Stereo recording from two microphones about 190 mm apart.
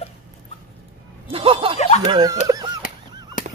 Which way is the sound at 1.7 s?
35° left (ahead or behind).